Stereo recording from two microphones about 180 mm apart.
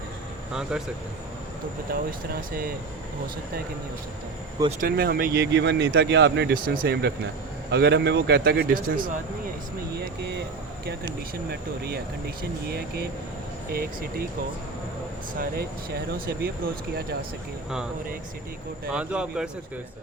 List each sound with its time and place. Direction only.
0.7 s speech: 5° right (ahead or behind)
1.9 s speech: 55° right (ahead or behind)
4.8 s speech: 55° right (ahead or behind)
10.0 s speech: 65° right (ahead or behind)
12.6 s speech: 60° right (ahead or behind)
16.1 s speech: 55° right (ahead or behind)
18.9 s speech: 5° right (ahead or behind)